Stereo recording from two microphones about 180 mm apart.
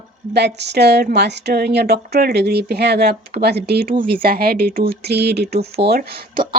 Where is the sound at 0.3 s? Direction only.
70° right (ahead or behind).